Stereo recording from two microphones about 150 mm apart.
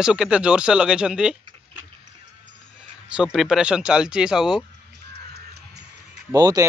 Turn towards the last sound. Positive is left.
turn(degrees=-25)  # may be behind; listen again after turning